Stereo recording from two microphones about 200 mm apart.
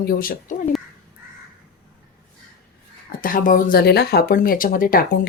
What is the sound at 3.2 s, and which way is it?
Speech, 45° left (ahead or behind).